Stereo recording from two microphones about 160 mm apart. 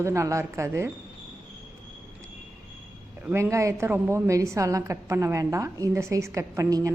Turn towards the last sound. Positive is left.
turn(degrees=-20)  # may be behind; listen again after turning